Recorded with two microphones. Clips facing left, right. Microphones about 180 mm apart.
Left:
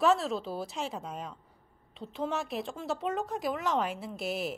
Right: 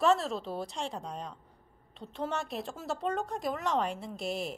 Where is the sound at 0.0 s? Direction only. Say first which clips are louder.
Left 1 dB; centre (ahead or behind).